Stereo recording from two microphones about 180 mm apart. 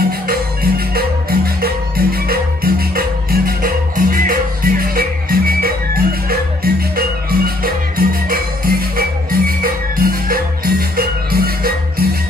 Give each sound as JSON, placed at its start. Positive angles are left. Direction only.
{"t": 0.3, "sound": "music", "side_deg": -55}